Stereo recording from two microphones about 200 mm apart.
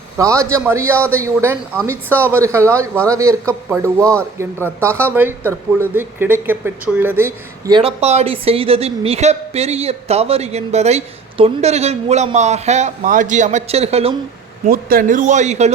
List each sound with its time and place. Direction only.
0.2 s speech: 15° right (ahead or behind)
4.8 s speech: 10° right (ahead or behind)
7.8 s a woman's voice: 30° right (ahead or behind)
14.6 s a woman's voice: 45° right (ahead or behind)